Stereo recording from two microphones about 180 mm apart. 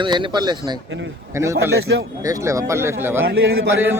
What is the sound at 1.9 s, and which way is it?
Speech, 90° right.